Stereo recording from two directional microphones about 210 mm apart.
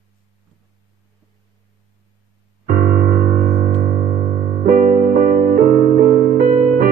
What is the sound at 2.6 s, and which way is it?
Music, 45° right (ahead or behind).